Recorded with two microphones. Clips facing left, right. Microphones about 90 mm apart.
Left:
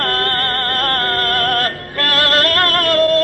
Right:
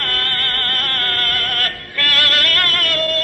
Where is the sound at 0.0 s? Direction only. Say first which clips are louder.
Left 6 dB; 35° left (ahead or behind).